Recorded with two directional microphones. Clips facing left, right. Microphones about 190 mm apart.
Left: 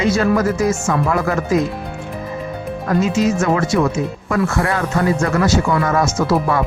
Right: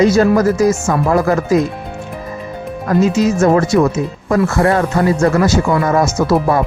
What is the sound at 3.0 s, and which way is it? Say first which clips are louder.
Speech: right 5 dB; 40° right (ahead or behind).